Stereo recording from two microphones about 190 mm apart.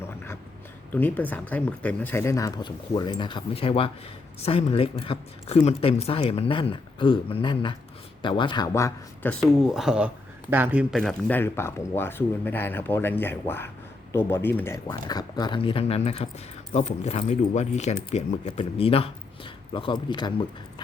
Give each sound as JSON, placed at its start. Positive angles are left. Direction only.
{"t": 0.9, "sound": "speech", "side_deg": 10}